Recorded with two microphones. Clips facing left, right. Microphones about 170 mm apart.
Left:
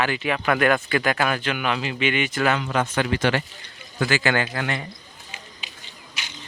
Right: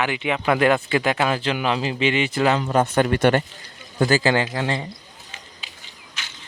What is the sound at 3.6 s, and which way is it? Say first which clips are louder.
Speech: right 5 dB; 35° right (ahead or behind).